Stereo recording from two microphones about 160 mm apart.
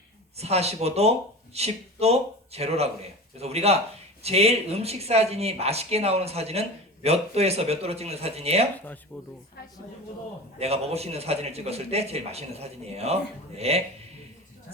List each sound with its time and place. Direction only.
0.3 s speech: 40° right (ahead or behind)
9.1 s speech: 10° left (ahead or behind)
10.6 s speech: 40° right (ahead or behind)